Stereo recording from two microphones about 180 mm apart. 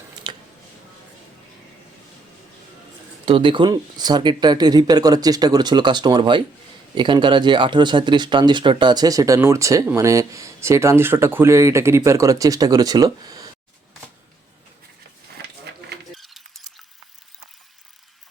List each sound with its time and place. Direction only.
3.2 s speech: 30° right (ahead or behind)
16.1 s rodents: centre (ahead or behind)